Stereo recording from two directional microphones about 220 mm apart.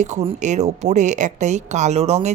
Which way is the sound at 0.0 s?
30° right (ahead or behind).